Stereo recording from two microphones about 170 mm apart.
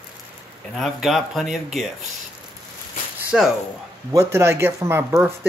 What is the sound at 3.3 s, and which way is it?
Speech, 5° right (ahead or behind).